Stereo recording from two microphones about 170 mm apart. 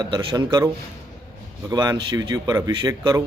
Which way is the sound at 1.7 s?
25° right (ahead or behind).